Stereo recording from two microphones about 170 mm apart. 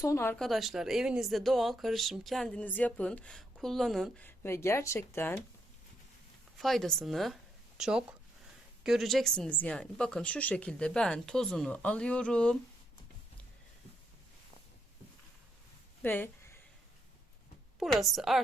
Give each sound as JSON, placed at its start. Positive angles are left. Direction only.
{"t": 0.0, "sound": "speech", "side_deg": 15}
{"t": 0.3, "sound": "speech", "side_deg": 0}
{"t": 4.3, "sound": "speech", "side_deg": 15}
{"t": 6.6, "sound": "speech", "side_deg": 0}
{"t": 16.0, "sound": "speech", "side_deg": 10}
{"t": 17.7, "sound": "speech", "side_deg": 0}